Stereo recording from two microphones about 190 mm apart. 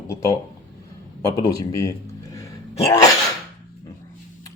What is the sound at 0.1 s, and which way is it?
A man's voice, 15° left (ahead or behind).